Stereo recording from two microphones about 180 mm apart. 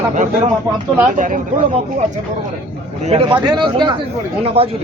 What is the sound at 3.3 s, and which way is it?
Speech, 25° right (ahead or behind).